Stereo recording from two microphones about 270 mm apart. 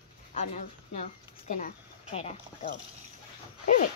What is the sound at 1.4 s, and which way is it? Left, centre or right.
Speech, left.